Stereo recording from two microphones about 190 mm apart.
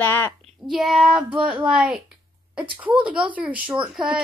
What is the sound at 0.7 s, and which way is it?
Speech, 5° right (ahead or behind).